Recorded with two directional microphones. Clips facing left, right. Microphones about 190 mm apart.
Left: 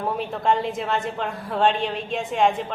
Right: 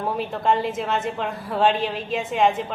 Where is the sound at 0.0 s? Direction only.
Centre (ahead or behind).